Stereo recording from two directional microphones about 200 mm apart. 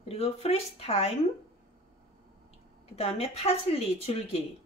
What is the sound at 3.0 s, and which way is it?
Speech, 30° left (ahead or behind).